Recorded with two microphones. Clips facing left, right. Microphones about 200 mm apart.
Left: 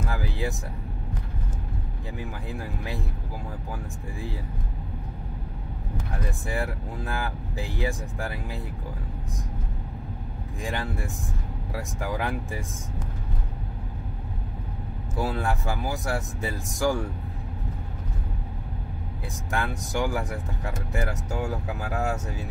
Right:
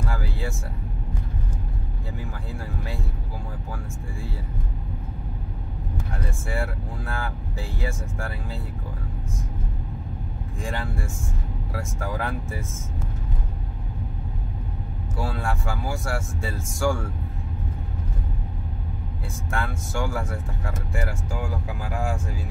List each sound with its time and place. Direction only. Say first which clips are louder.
0.1 s vehicle: left 1 dB; 20° left (ahead or behind)
6.5 s speech: right 1 dB; 20° left (ahead or behind)
11.7 s speech: even; 15° left (ahead or behind)
15.1 s speech: left 2 dB; 20° left (ahead or behind)
19.5 s speech: left 1 dB; 15° left (ahead or behind)